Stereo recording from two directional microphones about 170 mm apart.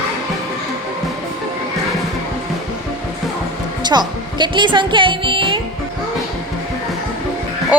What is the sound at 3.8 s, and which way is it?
Music, 25° right (ahead or behind).